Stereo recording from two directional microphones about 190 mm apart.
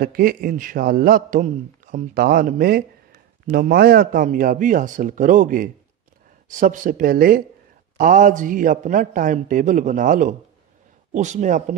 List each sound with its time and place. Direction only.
0.0 s a man's voice: 50° right (ahead or behind)